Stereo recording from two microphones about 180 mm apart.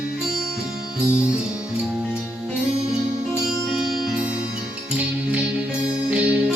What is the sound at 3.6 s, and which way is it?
Music, 5° right (ahead or behind).